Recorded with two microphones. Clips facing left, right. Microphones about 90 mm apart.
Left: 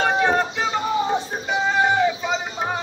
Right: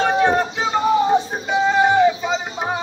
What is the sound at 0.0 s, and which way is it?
Music, 5° right (ahead or behind).